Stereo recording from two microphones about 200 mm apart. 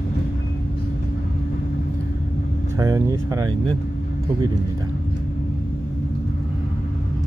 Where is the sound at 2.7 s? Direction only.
15° right (ahead or behind).